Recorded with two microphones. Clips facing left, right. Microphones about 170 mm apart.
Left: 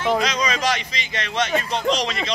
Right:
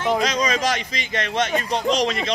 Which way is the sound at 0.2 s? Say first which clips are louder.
Right 1 dB; 45° right (ahead or behind).